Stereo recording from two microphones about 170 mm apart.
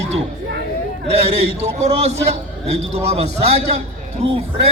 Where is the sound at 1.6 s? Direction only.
40° right (ahead or behind).